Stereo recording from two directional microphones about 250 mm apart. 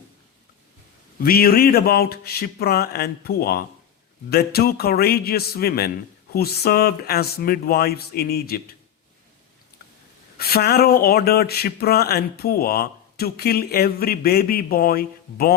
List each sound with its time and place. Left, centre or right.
1.2 s speech: left
10.3 s speech: left